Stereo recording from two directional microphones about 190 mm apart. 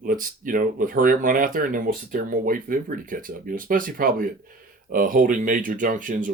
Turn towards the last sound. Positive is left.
turn(degrees=-45)  # may be behind; listen again after turning